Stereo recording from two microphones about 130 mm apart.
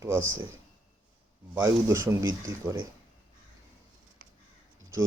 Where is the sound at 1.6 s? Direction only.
25° right (ahead or behind).